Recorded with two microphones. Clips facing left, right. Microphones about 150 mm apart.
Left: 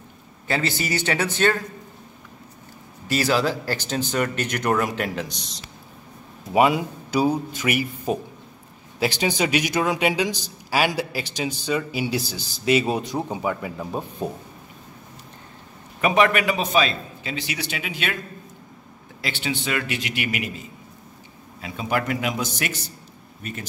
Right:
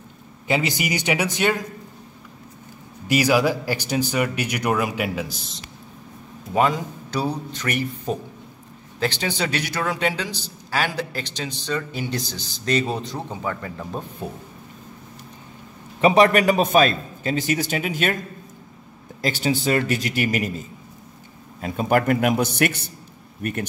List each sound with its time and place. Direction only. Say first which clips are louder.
0.5 s speech: right 2 dB; 15° right (ahead or behind)
3.1 s speech: right 3 dB; 15° right (ahead or behind)
6.5 s a man's voice: left 2 dB; 10° left (ahead or behind)
16.0 s a man's voice: right 4 dB; 30° right (ahead or behind)
19.2 s a man's voice: right 6 dB; 40° right (ahead or behind); by 22.8 s 60° right (ahead or behind)